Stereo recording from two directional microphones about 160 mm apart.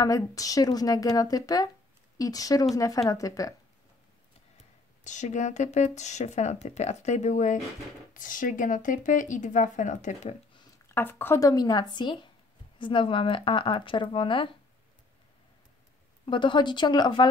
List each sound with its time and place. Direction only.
0.0 s a woman's voice: 20° left (ahead or behind)
5.0 s speech: 50° left (ahead or behind)
10.9 s a woman's voice: 15° left (ahead or behind); by 14.5 s 30° left (ahead or behind)
16.3 s a woman's voice: 30° left (ahead or behind)